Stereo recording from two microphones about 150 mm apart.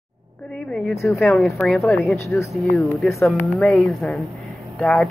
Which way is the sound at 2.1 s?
20° left (ahead or behind).